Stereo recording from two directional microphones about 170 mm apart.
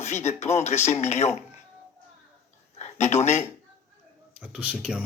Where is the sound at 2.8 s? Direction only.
40° left (ahead or behind).